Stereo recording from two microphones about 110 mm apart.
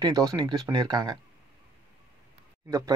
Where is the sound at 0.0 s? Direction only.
35° right (ahead or behind).